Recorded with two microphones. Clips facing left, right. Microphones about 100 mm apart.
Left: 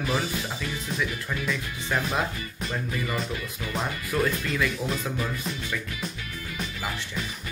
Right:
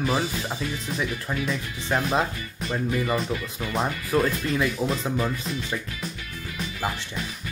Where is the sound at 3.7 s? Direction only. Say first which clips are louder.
Right 5 dB; 35° right (ahead or behind).